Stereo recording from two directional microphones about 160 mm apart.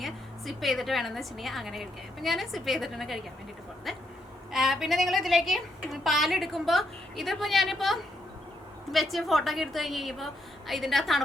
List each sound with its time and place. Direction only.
0.0 s a woman's voice: centre (ahead or behind)